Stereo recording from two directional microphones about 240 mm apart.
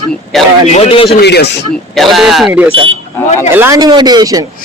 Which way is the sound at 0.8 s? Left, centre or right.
Left.